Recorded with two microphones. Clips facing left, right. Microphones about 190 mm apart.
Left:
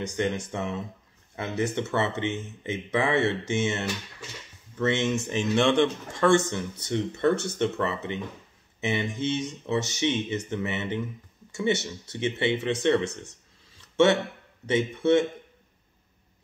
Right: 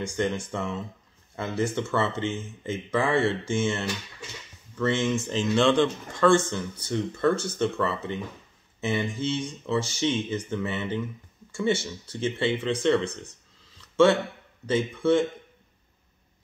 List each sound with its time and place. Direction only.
0.0 s speech: 20° left (ahead or behind)